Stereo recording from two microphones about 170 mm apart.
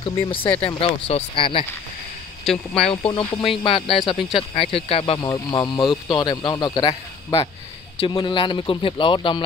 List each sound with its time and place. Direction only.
0.0 s speech: 30° left (ahead or behind)
2.4 s speech: 5° left (ahead or behind)
2.9 s speech: 35° left (ahead or behind)
8.0 s speech: 25° left (ahead or behind)